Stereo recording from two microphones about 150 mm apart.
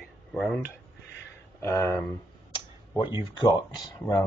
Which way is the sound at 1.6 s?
20° left (ahead or behind).